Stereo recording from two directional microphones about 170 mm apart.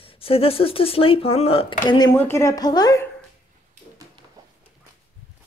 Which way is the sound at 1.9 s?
25° left (ahead or behind).